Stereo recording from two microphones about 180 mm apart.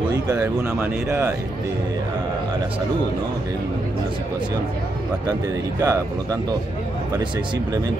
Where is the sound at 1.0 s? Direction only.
15° right (ahead or behind).